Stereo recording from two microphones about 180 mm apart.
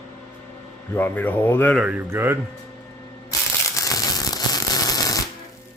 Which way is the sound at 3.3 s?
20° left (ahead or behind).